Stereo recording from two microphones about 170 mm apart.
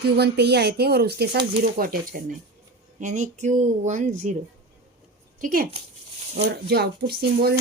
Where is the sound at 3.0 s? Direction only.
45° right (ahead or behind).